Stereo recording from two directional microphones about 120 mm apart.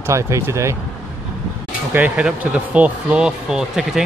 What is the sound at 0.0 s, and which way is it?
Speech, 25° right (ahead or behind).